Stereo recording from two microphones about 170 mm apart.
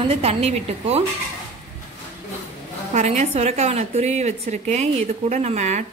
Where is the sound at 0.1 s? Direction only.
35° right (ahead or behind).